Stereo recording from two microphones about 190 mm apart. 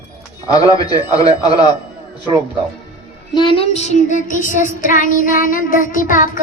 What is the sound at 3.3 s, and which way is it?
Child singing, 30° left (ahead or behind).